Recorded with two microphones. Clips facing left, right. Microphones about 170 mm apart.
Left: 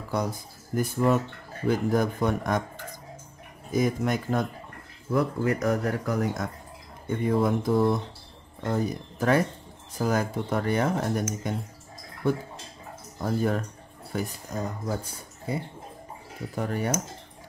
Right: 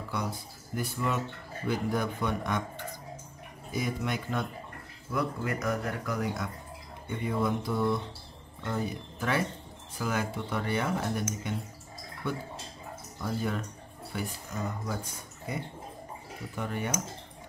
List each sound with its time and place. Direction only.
0.1 s speech: 45° left (ahead or behind)
3.7 s speech: 45° left (ahead or behind)
13.2 s speech: 45° left (ahead or behind)
14.1 s speech: 35° left (ahead or behind)